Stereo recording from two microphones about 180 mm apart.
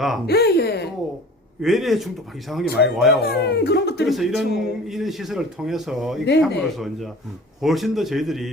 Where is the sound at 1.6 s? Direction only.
Centre (ahead or behind).